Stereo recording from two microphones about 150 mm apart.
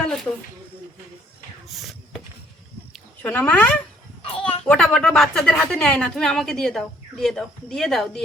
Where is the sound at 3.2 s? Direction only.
10° left (ahead or behind).